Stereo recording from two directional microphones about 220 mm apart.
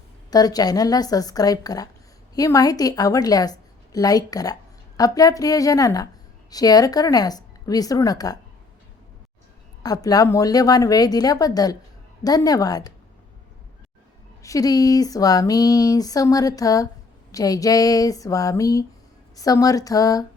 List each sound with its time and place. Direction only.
0.3 s speech: 15° left (ahead or behind)
9.8 s speech: 15° left (ahead or behind)
14.4 s speech: 15° left (ahead or behind)